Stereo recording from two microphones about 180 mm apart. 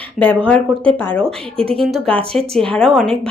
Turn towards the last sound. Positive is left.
turn(degrees=0)  # may be behind; listen again after turning